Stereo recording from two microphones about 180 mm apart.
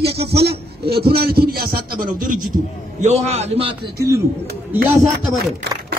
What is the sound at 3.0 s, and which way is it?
Speech, 40° right (ahead or behind).